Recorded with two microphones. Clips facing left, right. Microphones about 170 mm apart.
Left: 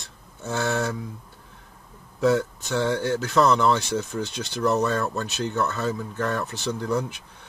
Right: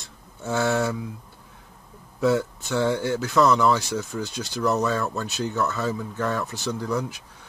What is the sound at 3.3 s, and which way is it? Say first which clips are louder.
Speech: right 1 dB; 20° left (ahead or behind).